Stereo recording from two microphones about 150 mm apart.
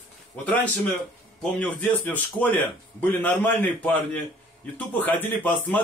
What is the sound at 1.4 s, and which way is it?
A man's voice, 10° left (ahead or behind).